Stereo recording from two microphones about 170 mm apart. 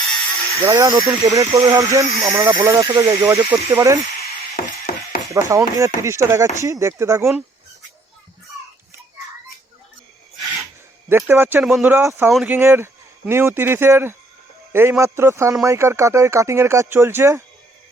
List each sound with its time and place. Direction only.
0.5 s speech: 20° right (ahead or behind)
4.6 s mechanisms: 55° left (ahead or behind)
5.3 s speech: 20° right (ahead or behind)
11.1 s speech: 10° right (ahead or behind)
12.5 s speech: 15° right (ahead or behind)